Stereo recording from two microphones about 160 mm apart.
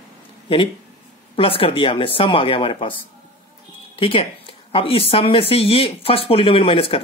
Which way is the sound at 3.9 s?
35° left (ahead or behind).